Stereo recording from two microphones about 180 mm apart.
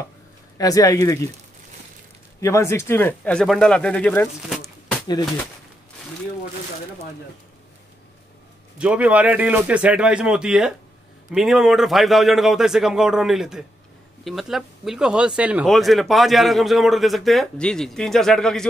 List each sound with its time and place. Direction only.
0.6 s speech: 20° left (ahead or behind)
2.4 s speech: 15° left (ahead or behind)
8.7 s a man's voice: 5° right (ahead or behind)